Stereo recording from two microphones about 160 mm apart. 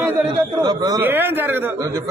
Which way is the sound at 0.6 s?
25° right (ahead or behind).